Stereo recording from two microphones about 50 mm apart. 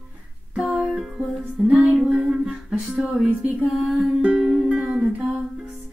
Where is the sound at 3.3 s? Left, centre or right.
Right.